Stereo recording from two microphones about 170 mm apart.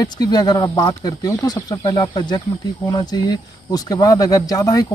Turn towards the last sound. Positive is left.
turn(degrees=25)  # may be behind; listen again after turning